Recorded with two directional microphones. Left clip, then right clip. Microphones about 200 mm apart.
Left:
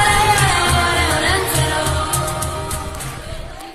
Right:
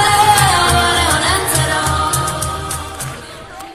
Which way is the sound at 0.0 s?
45° right (ahead or behind).